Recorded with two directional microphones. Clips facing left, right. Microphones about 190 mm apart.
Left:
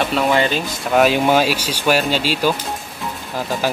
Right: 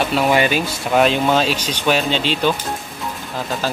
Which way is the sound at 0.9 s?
5° left (ahead or behind).